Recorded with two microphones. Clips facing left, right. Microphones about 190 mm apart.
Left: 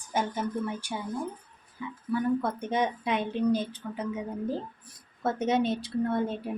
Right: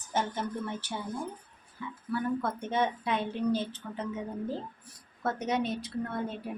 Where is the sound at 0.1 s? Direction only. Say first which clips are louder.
Left 2 dB; 10° left (ahead or behind).